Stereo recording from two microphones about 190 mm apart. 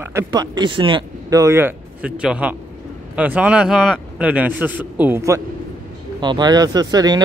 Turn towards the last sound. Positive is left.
turn(degrees=-20)  # may be behind; listen again after turning